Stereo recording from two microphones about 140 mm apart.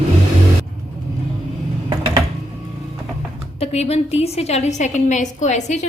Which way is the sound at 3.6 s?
45° left (ahead or behind).